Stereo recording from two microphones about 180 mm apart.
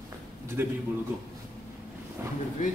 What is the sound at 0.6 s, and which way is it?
Speech, 10° right (ahead or behind).